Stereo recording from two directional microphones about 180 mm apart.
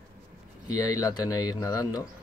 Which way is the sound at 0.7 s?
20° left (ahead or behind).